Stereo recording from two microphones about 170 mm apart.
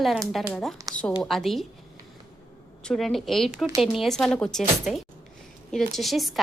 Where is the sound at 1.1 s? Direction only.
Centre (ahead or behind).